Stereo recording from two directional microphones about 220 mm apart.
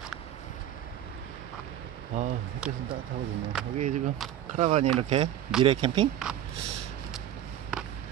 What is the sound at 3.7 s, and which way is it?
Speech, 35° right (ahead or behind).